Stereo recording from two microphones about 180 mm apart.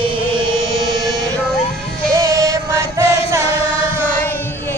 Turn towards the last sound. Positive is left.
turn(degrees=-15)  # may be behind; listen again after turning